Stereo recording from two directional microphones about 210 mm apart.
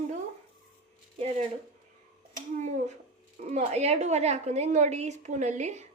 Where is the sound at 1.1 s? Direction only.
30° right (ahead or behind).